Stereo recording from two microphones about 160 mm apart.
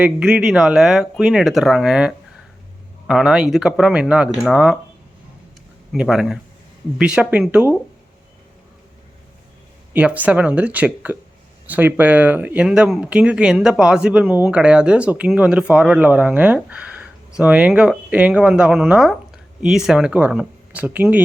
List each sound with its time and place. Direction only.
0.0 s speech: 5° right (ahead or behind)
5.9 s speech: centre (ahead or behind)
9.9 s speech: 10° right (ahead or behind)